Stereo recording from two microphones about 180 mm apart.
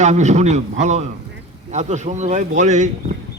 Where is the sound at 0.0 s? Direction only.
40° right (ahead or behind).